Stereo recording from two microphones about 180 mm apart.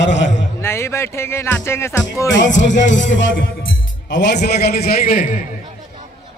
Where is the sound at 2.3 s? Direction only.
90° left.